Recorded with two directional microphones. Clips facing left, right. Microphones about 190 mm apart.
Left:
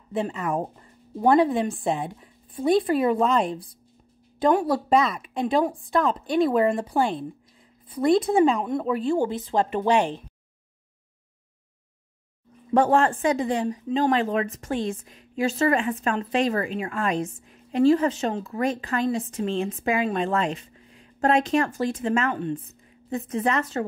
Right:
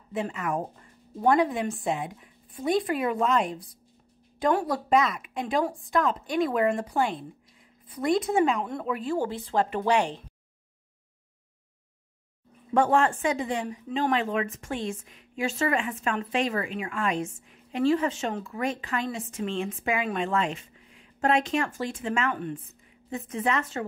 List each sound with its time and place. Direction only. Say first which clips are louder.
0.1 s speech: left 3 dB; 30° left (ahead or behind)
8.5 s a woman's voice: left 5 dB; 15° left (ahead or behind)
8.8 s speech: left 4 dB; 30° left (ahead or behind)
12.7 s speech: left 3 dB; 35° left (ahead or behind)
22.3 s speech: left 4 dB; 25° left (ahead or behind)
23.0 s speech: left 4 dB; 40° left (ahead or behind)